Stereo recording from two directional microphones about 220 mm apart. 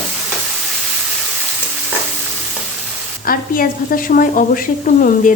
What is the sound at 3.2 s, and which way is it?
A woman's voice, 40° left (ahead or behind).